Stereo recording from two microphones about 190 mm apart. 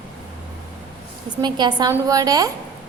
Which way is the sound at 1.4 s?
20° right (ahead or behind).